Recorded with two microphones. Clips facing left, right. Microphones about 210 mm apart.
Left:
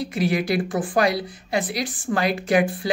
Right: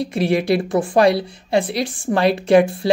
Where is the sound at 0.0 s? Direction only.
25° right (ahead or behind).